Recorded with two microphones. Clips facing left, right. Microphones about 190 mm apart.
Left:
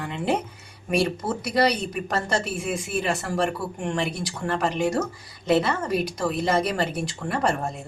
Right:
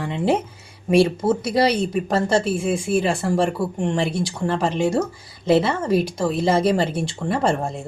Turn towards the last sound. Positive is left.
turn(degrees=-25)  # may be behind; listen again after turning